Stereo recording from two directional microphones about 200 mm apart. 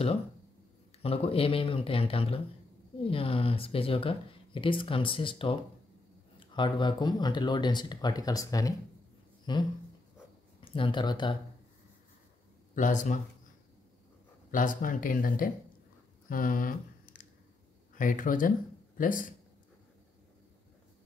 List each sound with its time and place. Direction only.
1.0 s speech: 30° left (ahead or behind)
12.7 s speech: 40° left (ahead or behind)
14.5 s speech: 40° left (ahead or behind)
16.3 s a sound: 45° left (ahead or behind)
17.9 s speech: 40° left (ahead or behind)